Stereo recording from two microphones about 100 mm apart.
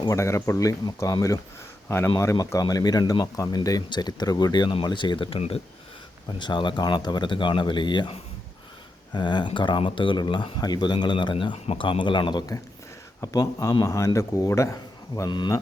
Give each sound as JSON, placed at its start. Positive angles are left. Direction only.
{"t": 0.1, "sound": "a man's voice", "side_deg": 30}
{"t": 6.4, "sound": "speech", "side_deg": 50}
{"t": 9.1, "sound": "speech", "side_deg": 50}
{"t": 11.5, "sound": "speech", "side_deg": 90}
{"t": 13.2, "sound": "a man's voice", "side_deg": 40}